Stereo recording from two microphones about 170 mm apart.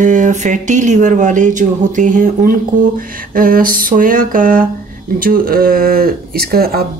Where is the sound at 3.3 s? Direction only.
55° right (ahead or behind).